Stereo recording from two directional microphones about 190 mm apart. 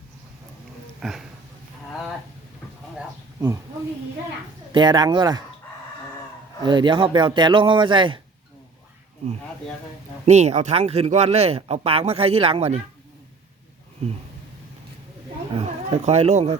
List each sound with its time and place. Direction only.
0.9 s speech: centre (ahead or behind)
4.7 s speech: 25° right (ahead or behind)
6.6 s speech: 25° right (ahead or behind)
10.2 s a man's voice: 35° right (ahead or behind)
15.5 s speech: 35° right (ahead or behind)